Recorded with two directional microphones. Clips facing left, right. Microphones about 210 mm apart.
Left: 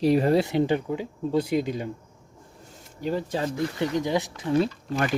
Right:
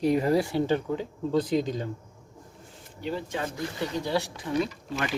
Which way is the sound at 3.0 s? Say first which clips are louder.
Left 4 dB; 40° left (ahead or behind).